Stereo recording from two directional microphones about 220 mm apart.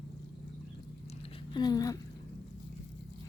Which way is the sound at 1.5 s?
20° left (ahead or behind).